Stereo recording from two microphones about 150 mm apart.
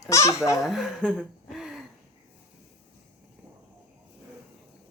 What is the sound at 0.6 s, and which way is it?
Speech, centre (ahead or behind).